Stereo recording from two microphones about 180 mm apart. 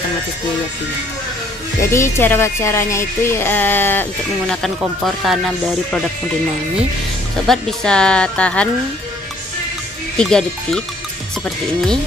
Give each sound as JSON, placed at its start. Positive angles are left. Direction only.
{"t": 1.8, "sound": "speech", "side_deg": 15}
{"t": 4.6, "sound": "speech", "side_deg": 0}
{"t": 7.4, "sound": "speech", "side_deg": 5}
{"t": 10.1, "sound": "speech", "side_deg": 5}